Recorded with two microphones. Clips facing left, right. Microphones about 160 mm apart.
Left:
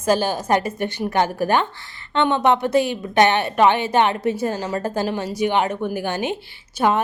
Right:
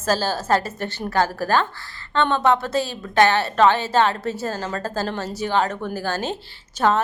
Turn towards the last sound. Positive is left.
turn(degrees=15)  # may be behind; listen again after turning